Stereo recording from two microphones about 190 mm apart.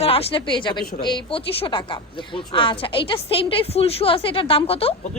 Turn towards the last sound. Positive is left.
turn(degrees=30)  # may be behind; listen again after turning